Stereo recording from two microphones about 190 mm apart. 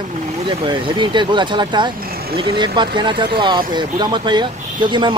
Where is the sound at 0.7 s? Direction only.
25° right (ahead or behind).